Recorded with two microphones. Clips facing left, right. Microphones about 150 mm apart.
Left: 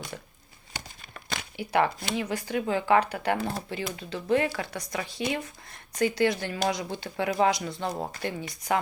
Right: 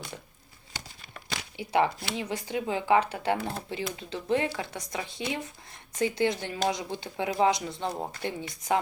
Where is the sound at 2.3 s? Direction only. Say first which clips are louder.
Left 2 dB; 15° right (ahead or behind).